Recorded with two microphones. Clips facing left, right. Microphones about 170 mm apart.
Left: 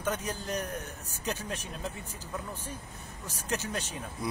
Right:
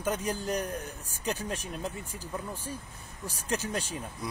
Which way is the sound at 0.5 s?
35° right (ahead or behind).